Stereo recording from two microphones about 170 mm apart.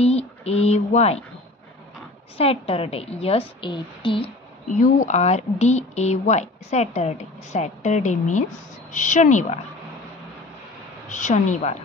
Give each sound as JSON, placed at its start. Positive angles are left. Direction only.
{"t": 0.0, "sound": "speech", "side_deg": 40}
{"t": 2.3, "sound": "a woman's voice", "side_deg": 35}
{"t": 4.7, "sound": "speech", "side_deg": 45}
{"t": 11.1, "sound": "speech", "side_deg": 45}